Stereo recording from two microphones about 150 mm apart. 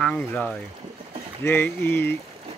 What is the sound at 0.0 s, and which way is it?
Speech, 10° left (ahead or behind).